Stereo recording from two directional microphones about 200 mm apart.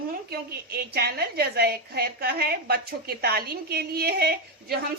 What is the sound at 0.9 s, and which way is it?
A woman's voice, 50° right (ahead or behind).